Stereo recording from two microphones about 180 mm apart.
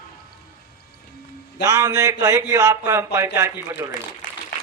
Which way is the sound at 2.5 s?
15° right (ahead or behind).